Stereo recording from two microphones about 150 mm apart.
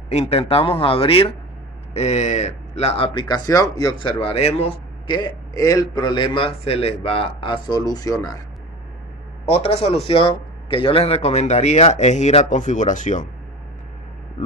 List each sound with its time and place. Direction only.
0.1 s a man's voice: 45° left (ahead or behind)
2.0 s a man's voice: 50° left (ahead or behind)
3.3 s a man's voice: 25° left (ahead or behind)
9.5 s a man's voice: 45° left (ahead or behind)